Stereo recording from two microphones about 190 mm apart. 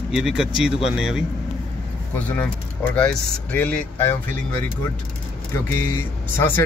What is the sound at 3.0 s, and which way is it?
Speech, 5° left (ahead or behind).